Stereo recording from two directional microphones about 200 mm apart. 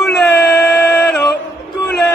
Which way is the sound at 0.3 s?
10° left (ahead or behind).